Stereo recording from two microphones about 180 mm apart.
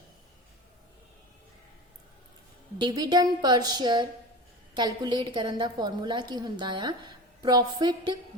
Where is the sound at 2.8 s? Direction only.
20° right (ahead or behind).